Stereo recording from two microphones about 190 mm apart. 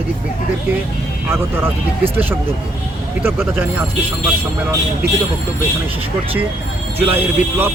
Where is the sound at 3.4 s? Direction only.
5° right (ahead or behind).